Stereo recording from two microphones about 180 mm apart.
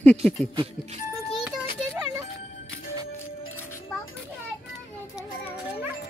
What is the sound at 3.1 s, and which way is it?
Music, 15° left (ahead or behind).